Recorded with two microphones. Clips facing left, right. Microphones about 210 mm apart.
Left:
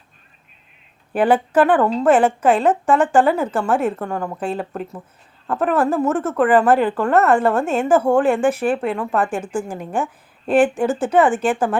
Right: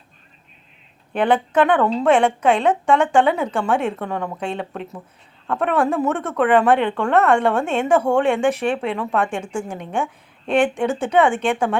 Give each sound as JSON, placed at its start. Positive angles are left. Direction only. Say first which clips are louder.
{"t": 1.1, "sound": "a woman's voice", "louder": "left 2 dB", "side_deg": 5}